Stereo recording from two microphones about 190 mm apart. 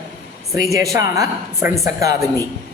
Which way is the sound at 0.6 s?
15° right (ahead or behind).